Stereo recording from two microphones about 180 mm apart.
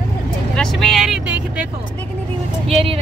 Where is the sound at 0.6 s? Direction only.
Centre (ahead or behind).